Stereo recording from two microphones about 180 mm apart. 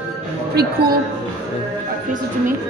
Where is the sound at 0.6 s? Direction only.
60° right (ahead or behind).